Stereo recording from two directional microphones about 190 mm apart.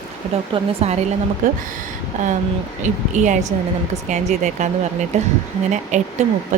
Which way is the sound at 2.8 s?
40° right (ahead or behind).